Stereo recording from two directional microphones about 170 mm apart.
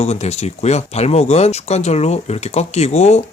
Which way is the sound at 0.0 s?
40° left (ahead or behind).